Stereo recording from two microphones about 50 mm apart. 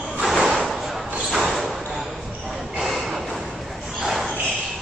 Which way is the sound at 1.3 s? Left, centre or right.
Centre.